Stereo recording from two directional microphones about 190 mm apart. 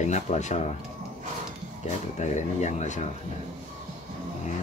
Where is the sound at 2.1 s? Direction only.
40° left (ahead or behind).